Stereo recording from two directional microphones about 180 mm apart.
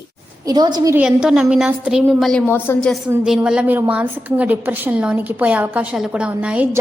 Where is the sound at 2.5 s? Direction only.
10° left (ahead or behind).